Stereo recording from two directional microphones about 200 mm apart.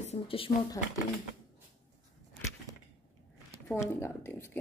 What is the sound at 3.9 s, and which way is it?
Speech, 10° left (ahead or behind).